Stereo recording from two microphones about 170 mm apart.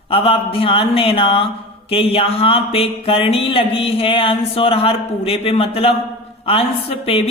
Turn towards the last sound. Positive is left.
turn(degrees=35)  # may be behind; listen again after turning